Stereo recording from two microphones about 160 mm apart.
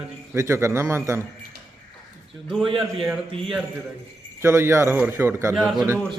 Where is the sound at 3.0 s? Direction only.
5° right (ahead or behind).